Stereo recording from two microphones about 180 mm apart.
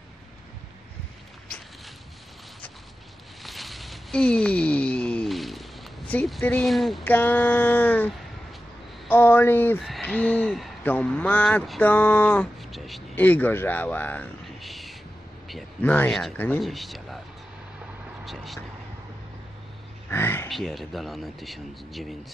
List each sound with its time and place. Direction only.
3.4 s a sound: centre (ahead or behind)
9.1 s speech: 10° left (ahead or behind)
9.8 s a man's voice: centre (ahead or behind)
18.2 s speech: centre (ahead or behind)
20.1 s a sound: 10° left (ahead or behind)
20.4 s speech: centre (ahead or behind)